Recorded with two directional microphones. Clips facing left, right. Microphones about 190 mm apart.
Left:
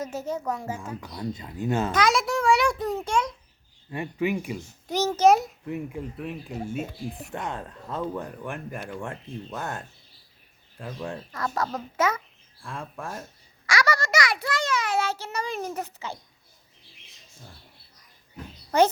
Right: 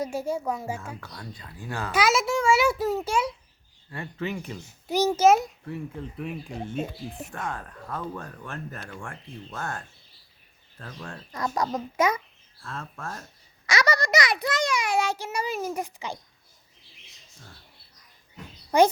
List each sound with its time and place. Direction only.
0.0 s a child's voice: 10° right (ahead or behind)
1.0 s speech: 20° left (ahead or behind)
1.9 s a child's voice: 5° right (ahead or behind)
3.9 s speech: 15° left (ahead or behind)
4.9 s a child's voice: 10° right (ahead or behind)
5.6 s speech: 15° left (ahead or behind)
6.1 s a child's voice: centre (ahead or behind)
7.3 s speech: 20° left (ahead or behind)
11.3 s a child's voice: 15° right (ahead or behind)
12.5 s speech: 15° left (ahead or behind)
13.7 s a child's voice: 20° right (ahead or behind)
18.7 s a child's voice: 15° right (ahead or behind)